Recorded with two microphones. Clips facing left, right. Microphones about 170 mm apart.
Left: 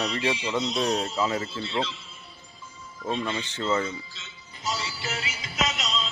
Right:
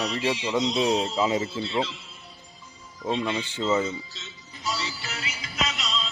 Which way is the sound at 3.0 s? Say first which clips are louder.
Right 2 dB; 10° right (ahead or behind).